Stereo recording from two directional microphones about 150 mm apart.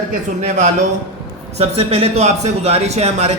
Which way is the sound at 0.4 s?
50° right (ahead or behind).